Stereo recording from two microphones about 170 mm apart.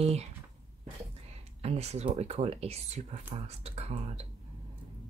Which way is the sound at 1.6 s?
40° right (ahead or behind).